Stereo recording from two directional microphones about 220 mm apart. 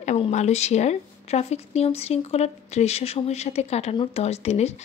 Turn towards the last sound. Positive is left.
turn(degrees=30)  # may be behind; listen again after turning